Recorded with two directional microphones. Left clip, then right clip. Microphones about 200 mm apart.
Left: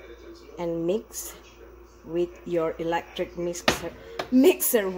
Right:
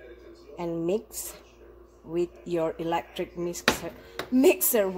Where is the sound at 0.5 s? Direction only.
10° right (ahead or behind).